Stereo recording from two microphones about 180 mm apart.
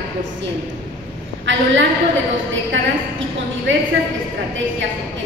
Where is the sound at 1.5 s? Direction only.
90° right.